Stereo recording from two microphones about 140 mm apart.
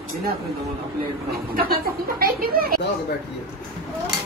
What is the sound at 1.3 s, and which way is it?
Speech, 90° right.